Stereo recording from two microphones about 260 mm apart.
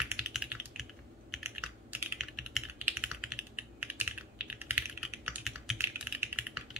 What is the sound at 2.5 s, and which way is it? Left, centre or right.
Computer keyboard, centre.